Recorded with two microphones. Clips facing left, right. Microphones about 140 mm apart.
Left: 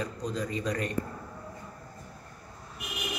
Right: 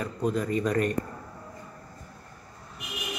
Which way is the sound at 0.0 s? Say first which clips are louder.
Right 5 dB; 55° right (ahead or behind).